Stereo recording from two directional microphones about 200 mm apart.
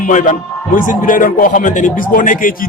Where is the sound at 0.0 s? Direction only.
40° left (ahead or behind).